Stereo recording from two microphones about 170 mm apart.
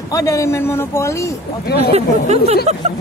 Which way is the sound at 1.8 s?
40° right (ahead or behind).